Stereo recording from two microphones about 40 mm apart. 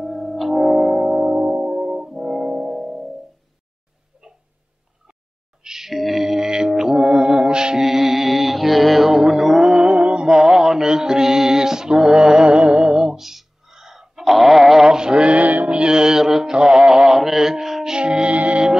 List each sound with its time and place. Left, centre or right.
0.0 s music: centre; by 1.9 s right
1.9 s music: centre
4.1 s a sound: centre
5.6 s music: centre
7.8 s mantra: centre
9.6 s mantra: right
10.2 s mantra: centre
12.5 s music: right
13.2 s a sound: centre
15.0 s mantra: right
15.3 s mantra: right
15.7 s mantra: right
16.7 s music: centre
17.9 s music: right